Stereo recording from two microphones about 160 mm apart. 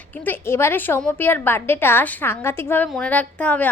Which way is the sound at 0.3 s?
15° left (ahead or behind).